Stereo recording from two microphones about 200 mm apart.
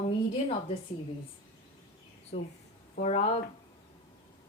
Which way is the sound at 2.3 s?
30° left (ahead or behind).